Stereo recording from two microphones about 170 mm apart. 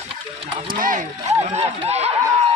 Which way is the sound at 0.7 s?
55° right (ahead or behind).